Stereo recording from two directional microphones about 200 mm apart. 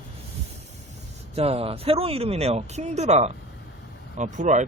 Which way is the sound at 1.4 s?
30° right (ahead or behind).